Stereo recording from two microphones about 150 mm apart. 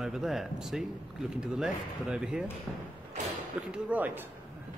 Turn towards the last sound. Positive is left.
turn(degrees=-10)  # may be behind; listen again after turning